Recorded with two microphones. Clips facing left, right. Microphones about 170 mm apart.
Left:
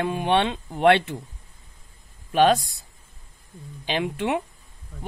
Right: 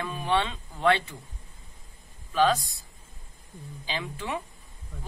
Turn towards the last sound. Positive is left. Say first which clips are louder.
# left 8 dB
turn(degrees=65)  # may be behind; listen again after turning